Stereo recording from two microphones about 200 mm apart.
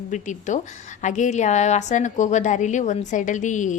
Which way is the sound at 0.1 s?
40° left (ahead or behind).